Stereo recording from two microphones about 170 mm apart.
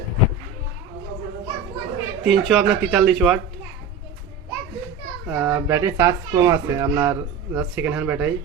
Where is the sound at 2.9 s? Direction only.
5° right (ahead or behind).